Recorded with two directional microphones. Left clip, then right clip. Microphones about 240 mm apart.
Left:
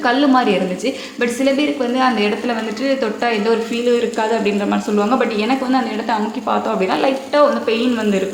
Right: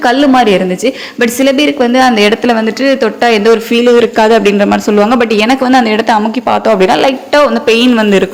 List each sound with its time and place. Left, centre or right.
0.0 s a woman's voice: right